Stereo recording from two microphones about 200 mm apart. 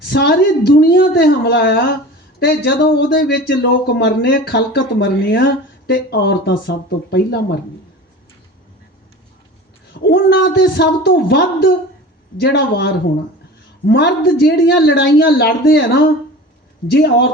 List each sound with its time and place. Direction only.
0.0 s a woman's voice: 55° left (ahead or behind)
10.0 s speech: 55° left (ahead or behind)